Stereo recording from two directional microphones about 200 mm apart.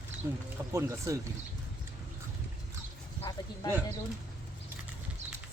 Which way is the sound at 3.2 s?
20° left (ahead or behind).